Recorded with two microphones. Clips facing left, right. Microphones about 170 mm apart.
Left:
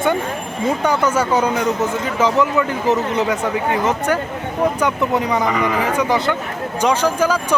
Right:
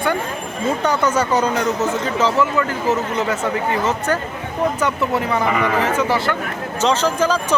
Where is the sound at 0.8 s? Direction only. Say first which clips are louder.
Even; 10° left (ahead or behind).